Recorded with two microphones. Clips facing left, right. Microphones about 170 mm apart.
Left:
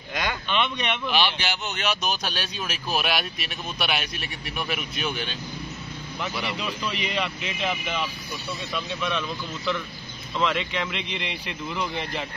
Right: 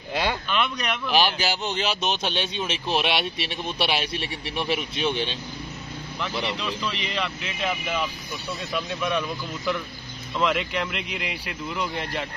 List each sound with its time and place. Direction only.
0.1 s a sound: 30° right (ahead or behind)
0.5 s speech: centre (ahead or behind)
1.1 s speech: 40° right (ahead or behind)
6.5 s speech: 5° left (ahead or behind); by 9.2 s 10° right (ahead or behind)
10.3 s speech: 5° right (ahead or behind)